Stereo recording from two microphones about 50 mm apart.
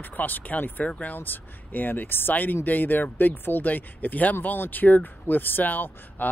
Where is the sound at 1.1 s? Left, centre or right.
Left.